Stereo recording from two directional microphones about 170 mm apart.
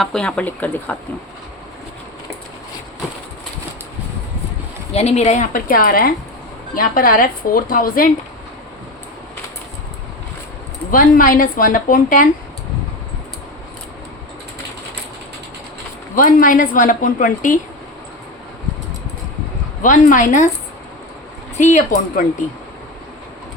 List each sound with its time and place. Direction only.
0.0 s speech: 5° left (ahead or behind)
4.9 s a woman's voice: 40° left (ahead or behind)
10.9 s a woman's voice: 55° left (ahead or behind)
16.1 s a woman's voice: 55° left (ahead or behind)
19.8 s a woman's voice: 50° left (ahead or behind)
21.6 s a woman's voice: 45° left (ahead or behind)